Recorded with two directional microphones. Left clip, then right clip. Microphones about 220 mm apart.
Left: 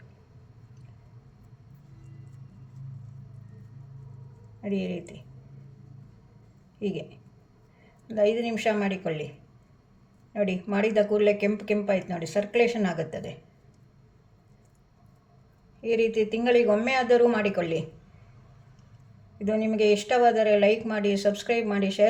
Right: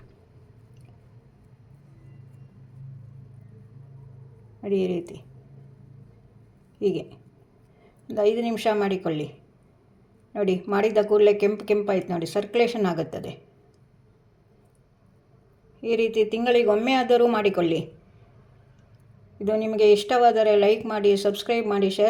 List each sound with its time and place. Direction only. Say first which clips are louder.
4.6 s speech: right 7 dB; 30° right (ahead or behind)
6.7 s a woman's voice: right 7 dB; 30° right (ahead or behind)
8.0 s speech: right 2 dB; 30° right (ahead or behind)
10.3 s speech: right 4 dB; 30° right (ahead or behind)
15.8 s speech: right 2 dB; 30° right (ahead or behind)
19.5 s speech: right 5 dB; 25° right (ahead or behind)